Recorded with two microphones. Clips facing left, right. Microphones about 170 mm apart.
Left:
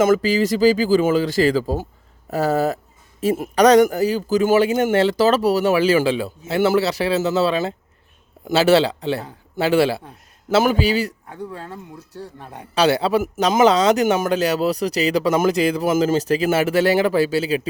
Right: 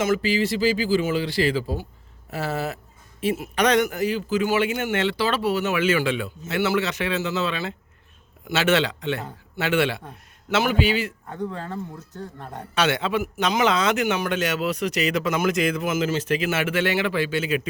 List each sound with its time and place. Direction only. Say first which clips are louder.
0.0 s a man's voice: left 6 dB; 45° left (ahead or behind)
11.3 s speech: right 3 dB; 10° left (ahead or behind)
12.7 s a man's voice: left 6 dB; 35° left (ahead or behind)